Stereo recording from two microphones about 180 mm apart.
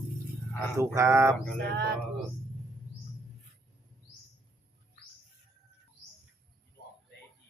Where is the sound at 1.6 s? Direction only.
65° right (ahead or behind).